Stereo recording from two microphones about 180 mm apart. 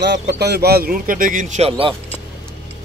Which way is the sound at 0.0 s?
70° right (ahead or behind).